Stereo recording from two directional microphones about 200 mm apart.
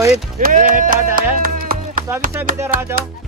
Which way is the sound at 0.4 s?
40° right (ahead or behind).